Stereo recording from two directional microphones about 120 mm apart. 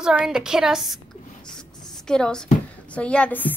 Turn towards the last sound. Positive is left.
turn(degrees=15)  # may be behind; listen again after turning